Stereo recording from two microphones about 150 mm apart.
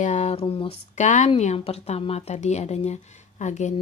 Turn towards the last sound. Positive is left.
turn(degrees=50)  # may be behind; listen again after turning